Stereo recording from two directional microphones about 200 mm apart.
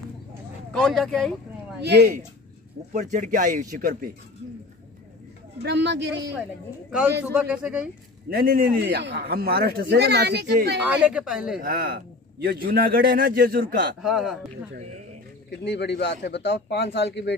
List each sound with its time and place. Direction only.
0.7 s speech: centre (ahead or behind)
1.8 s speech: 55° right (ahead or behind)
2.9 s speech: 40° right (ahead or behind)
5.6 s speech: 55° right (ahead or behind)
6.9 s a man's voice: 5° right (ahead or behind)
8.3 s speech: 50° right (ahead or behind)
10.9 s a man's voice: 5° right (ahead or behind)
11.6 s speech: 50° right (ahead or behind)
14.0 s a man's voice: centre (ahead or behind)
15.6 s a man's voice: 60° left (ahead or behind)